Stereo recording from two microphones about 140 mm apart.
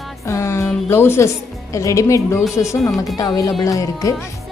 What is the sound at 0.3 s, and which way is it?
Music, 20° left (ahead or behind).